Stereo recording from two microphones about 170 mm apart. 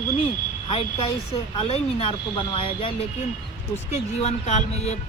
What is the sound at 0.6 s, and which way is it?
Speech, 30° left (ahead or behind).